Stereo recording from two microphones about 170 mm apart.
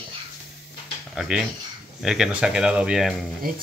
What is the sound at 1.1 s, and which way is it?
Speech, 5° right (ahead or behind).